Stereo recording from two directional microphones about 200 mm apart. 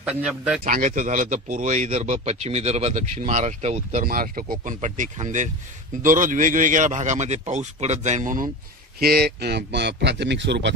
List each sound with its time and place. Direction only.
0.0 s speech: 5° right (ahead or behind)
0.7 s a man's voice: 40° right (ahead or behind)
4.0 s a man's voice: 45° right (ahead or behind)
9.0 s speech: 50° right (ahead or behind)